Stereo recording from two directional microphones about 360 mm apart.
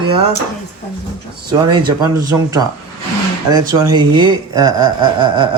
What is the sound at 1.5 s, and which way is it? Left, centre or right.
Speech, centre.